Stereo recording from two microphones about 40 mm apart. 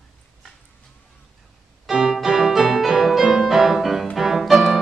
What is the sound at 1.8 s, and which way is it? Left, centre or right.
Music, centre.